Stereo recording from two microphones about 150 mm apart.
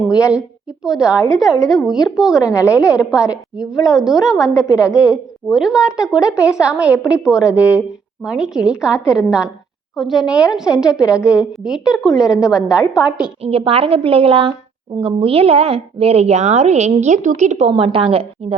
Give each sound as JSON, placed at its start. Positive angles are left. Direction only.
{"t": 0.9, "sound": "a woman's voice", "side_deg": -5}
{"t": 2.4, "sound": "a woman's voice", "side_deg": 20}
{"t": 3.2, "sound": "a woman's voice", "side_deg": -5}
{"t": 4.4, "sound": "a woman's voice", "side_deg": 20}
{"t": 5.5, "sound": "a woman's voice", "side_deg": -5}
{"t": 13.4, "sound": "a woman's voice", "side_deg": -40}
{"t": 17.7, "sound": "a woman's voice", "side_deg": -35}